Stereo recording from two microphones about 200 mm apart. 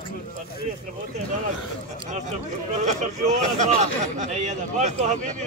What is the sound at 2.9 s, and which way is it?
Speech, 35° right (ahead or behind).